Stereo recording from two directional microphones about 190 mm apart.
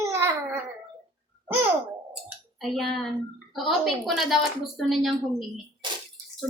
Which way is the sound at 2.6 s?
Centre (ahead or behind).